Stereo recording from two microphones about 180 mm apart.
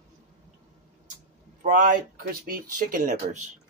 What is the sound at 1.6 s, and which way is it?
Speech, 45° right (ahead or behind).